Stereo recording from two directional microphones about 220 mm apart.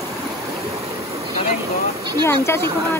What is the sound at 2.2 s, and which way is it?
Speech, 10° left (ahead or behind).